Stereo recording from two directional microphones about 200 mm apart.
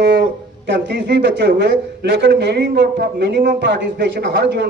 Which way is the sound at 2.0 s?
60° right (ahead or behind).